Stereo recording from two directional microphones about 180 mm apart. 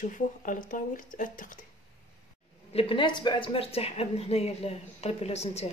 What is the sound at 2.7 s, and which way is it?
Speech, 30° left (ahead or behind).